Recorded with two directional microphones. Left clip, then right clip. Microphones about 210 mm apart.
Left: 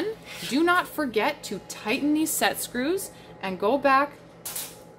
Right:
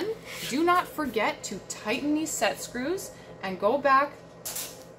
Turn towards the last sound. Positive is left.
turn(degrees=45)  # may be behind; listen again after turning